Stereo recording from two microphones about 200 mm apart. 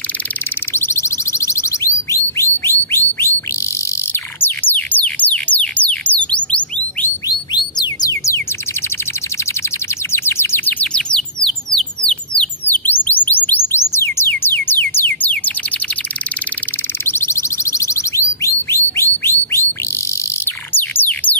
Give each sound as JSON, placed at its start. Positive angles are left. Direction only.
{"t": 0.7, "sound": "a sound", "side_deg": 15}
{"t": 4.1, "sound": "music", "side_deg": 10}
{"t": 7.2, "sound": "bird", "side_deg": 20}
{"t": 10.1, "sound": "bird", "side_deg": 10}
{"t": 13.5, "sound": "music", "side_deg": 10}
{"t": 17.0, "sound": "a sound", "side_deg": 10}
{"t": 18.9, "sound": "bird", "side_deg": 10}
{"t": 20.7, "sound": "music", "side_deg": 10}